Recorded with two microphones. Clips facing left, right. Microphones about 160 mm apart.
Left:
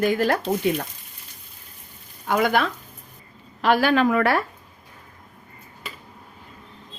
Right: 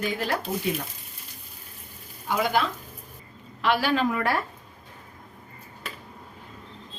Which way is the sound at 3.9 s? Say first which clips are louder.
Left 5 dB; 75° left (ahead or behind).